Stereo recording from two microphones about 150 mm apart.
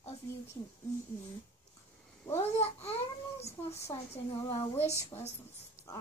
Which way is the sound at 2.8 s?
45° left (ahead or behind).